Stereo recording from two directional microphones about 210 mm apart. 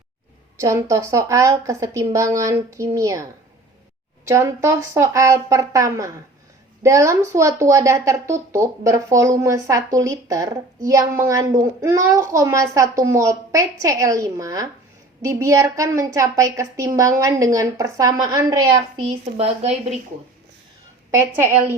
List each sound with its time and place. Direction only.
0.6 s a woman's voice: 15° right (ahead or behind)
4.3 s a woman's voice: 15° right (ahead or behind); by 20.0 s 30° right (ahead or behind)
21.1 s a woman's voice: 10° right (ahead or behind)